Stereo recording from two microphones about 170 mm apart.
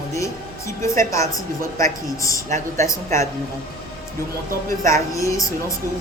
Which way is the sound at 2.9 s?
20° left (ahead or behind).